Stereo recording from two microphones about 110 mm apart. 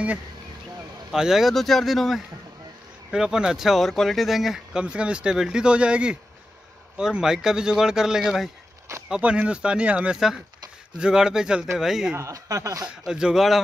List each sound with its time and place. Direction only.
1.1 s speech: 5° right (ahead or behind)
12.2 s speech: 30° right (ahead or behind)
12.8 s speech: 5° right (ahead or behind)